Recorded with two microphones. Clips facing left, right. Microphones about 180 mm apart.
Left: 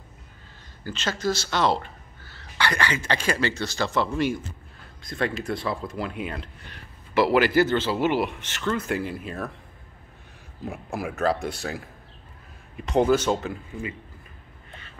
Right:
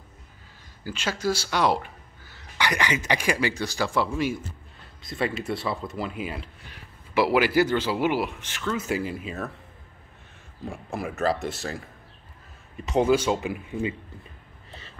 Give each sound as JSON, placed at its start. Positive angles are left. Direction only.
{"t": 0.8, "sound": "speech", "side_deg": -10}
{"t": 10.6, "sound": "a man's voice", "side_deg": 5}
{"t": 13.7, "sound": "speech", "side_deg": -20}